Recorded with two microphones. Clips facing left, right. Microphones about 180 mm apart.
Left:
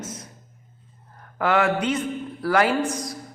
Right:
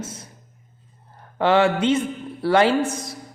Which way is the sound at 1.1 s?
25° right (ahead or behind).